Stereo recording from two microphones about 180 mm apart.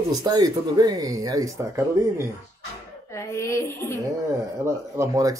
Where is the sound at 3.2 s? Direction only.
15° left (ahead or behind).